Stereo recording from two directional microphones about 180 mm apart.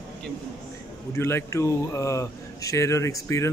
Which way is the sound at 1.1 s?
15° left (ahead or behind).